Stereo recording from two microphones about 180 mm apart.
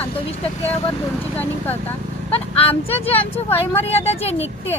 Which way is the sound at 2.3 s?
30° left (ahead or behind).